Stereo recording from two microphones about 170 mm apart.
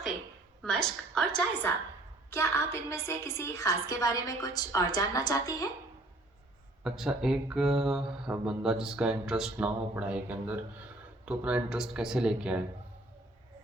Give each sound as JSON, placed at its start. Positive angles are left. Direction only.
{"t": 0.6, "sound": "speech", "side_deg": 5}
{"t": 2.3, "sound": "a woman's voice", "side_deg": 15}
{"t": 6.8, "sound": "speech", "side_deg": -5}